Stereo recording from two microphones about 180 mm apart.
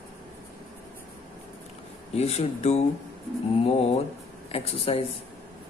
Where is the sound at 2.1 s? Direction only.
35° left (ahead or behind).